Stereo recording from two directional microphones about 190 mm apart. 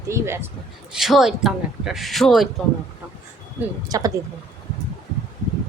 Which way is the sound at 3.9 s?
20° right (ahead or behind).